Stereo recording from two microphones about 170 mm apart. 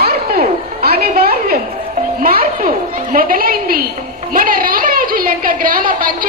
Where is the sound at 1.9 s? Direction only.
55° right (ahead or behind).